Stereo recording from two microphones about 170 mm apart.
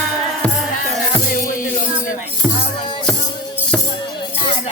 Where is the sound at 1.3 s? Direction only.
50° left (ahead or behind).